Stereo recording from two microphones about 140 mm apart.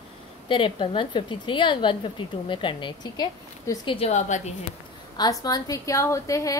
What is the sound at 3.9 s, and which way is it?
Speech, 50° left (ahead or behind).